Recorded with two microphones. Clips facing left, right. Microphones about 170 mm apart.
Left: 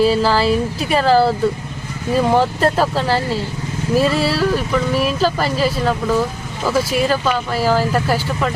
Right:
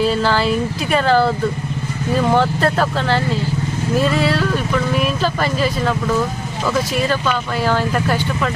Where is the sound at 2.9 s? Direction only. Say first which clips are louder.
Left 1 dB; 35° left (ahead or behind).